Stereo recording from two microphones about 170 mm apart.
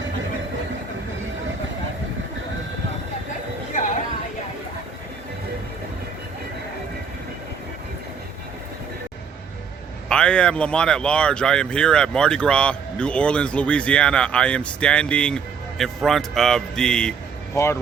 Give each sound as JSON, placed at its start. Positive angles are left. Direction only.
{"t": 10.1, "sound": "speech", "side_deg": 5}
{"t": 17.5, "sound": "speech", "side_deg": 15}